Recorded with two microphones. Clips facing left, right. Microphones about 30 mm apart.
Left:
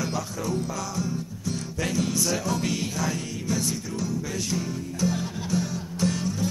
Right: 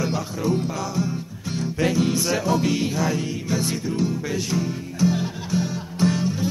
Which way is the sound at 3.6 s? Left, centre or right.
Right.